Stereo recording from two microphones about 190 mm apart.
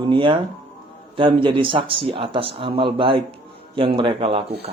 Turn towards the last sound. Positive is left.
turn(degrees=-25)  # may be behind; listen again after turning